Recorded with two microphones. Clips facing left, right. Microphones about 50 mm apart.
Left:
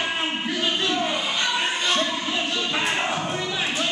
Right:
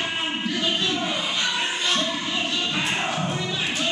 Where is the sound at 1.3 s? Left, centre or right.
Centre.